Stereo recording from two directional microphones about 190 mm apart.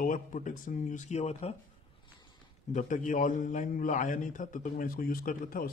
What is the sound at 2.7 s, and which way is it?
A man's voice, 40° left (ahead or behind).